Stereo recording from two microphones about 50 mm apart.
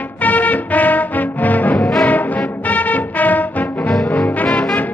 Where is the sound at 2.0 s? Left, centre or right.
Left.